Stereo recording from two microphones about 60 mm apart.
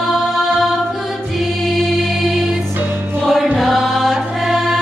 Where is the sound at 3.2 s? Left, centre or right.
Centre.